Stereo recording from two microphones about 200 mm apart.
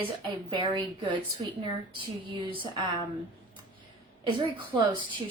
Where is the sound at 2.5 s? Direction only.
25° right (ahead or behind).